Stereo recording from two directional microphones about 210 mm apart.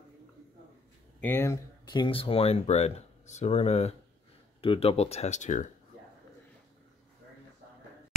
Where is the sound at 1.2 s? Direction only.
10° left (ahead or behind); by 5.7 s 35° left (ahead or behind).